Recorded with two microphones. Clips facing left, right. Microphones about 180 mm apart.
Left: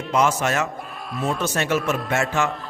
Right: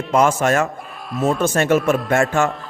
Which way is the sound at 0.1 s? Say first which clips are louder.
Right 5 dB; 50° right (ahead or behind).